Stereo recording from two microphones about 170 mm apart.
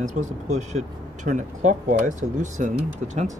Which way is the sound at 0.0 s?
45° right (ahead or behind).